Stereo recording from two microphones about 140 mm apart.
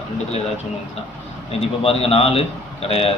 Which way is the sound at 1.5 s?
45° left (ahead or behind).